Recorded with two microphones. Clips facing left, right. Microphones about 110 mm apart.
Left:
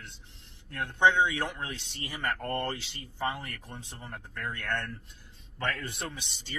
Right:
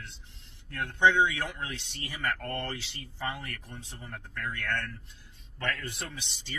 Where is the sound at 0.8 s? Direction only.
15° left (ahead or behind).